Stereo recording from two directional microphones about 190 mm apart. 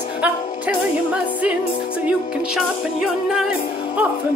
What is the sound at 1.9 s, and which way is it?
Music, 5° right (ahead or behind).